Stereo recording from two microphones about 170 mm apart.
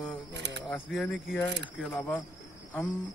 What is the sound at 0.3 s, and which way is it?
Camera, 90° right.